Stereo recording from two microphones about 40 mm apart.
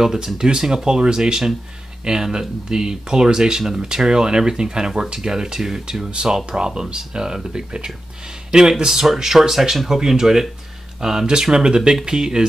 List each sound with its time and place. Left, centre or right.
0.0 s speech: centre